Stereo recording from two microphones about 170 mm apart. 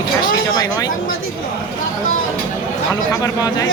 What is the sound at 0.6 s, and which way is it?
Speech, 20° left (ahead or behind).